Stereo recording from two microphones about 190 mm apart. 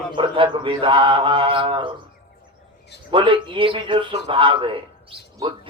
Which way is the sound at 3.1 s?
25° right (ahead or behind).